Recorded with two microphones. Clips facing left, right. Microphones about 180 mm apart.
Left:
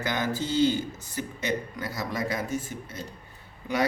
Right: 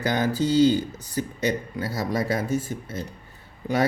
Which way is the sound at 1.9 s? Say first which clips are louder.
Right 5 dB; 35° right (ahead or behind).